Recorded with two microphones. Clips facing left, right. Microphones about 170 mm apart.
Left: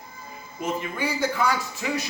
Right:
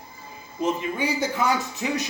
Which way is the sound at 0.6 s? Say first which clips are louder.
Right 3 dB; 15° right (ahead or behind).